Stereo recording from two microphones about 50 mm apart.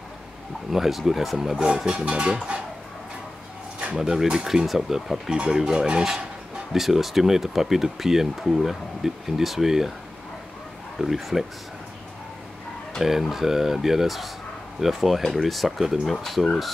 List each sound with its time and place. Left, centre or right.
0.7 s speech: centre
1.6 s speech: centre
4.0 s speech: centre
11.0 s speech: centre
13.0 s speech: centre
16.2 s speech: centre